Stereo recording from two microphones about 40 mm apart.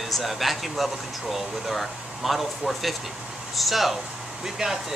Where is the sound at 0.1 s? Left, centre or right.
Centre.